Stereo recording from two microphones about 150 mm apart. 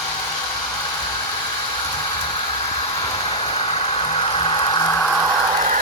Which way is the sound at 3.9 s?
40° left (ahead or behind).